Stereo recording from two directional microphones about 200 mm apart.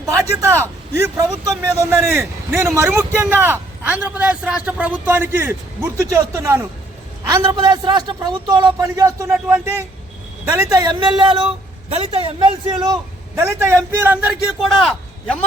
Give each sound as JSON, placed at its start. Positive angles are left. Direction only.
{"t": 0.0, "sound": "a man's voice", "side_deg": -15}